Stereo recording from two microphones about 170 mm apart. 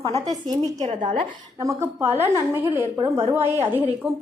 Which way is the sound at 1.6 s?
15° right (ahead or behind).